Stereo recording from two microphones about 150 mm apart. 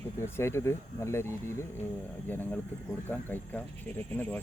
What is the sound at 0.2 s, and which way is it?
Speech, 15° left (ahead or behind).